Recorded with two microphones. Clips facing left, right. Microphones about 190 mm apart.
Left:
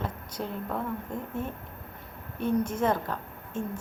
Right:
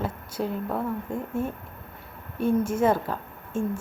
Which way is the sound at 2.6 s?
5° right (ahead or behind).